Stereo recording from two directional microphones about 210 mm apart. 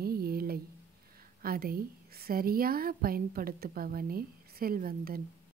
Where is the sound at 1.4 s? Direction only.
45° right (ahead or behind).